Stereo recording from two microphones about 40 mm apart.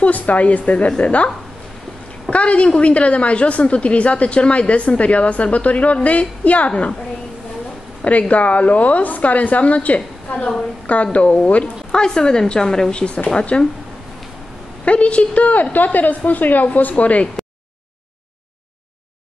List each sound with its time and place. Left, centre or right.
0.0 s a woman's voice: left
2.3 s a woman's voice: left
8.0 s a woman's voice: left
11.9 s a woman's voice: centre
14.9 s a woman's voice: left